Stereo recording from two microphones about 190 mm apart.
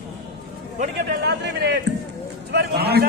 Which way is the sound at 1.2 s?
60° right (ahead or behind).